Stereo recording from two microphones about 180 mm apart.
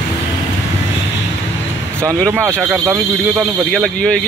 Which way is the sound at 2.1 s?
5° left (ahead or behind).